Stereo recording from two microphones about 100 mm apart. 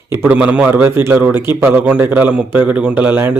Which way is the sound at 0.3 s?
15° right (ahead or behind).